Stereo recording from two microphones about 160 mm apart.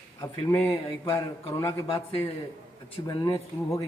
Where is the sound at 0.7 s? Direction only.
30° left (ahead or behind).